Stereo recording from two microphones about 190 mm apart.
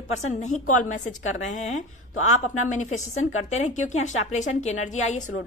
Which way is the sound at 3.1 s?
90° left.